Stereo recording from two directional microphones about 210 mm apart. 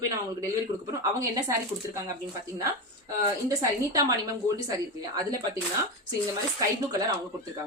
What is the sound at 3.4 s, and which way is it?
Speech, 15° right (ahead or behind).